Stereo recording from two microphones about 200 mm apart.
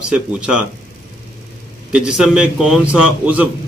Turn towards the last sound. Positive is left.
turn(degrees=-5)  # may be behind; listen again after turning